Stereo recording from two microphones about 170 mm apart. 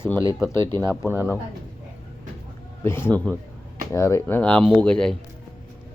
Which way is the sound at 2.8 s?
15° left (ahead or behind).